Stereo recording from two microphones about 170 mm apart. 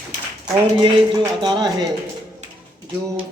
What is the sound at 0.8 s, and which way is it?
Music, 25° right (ahead or behind).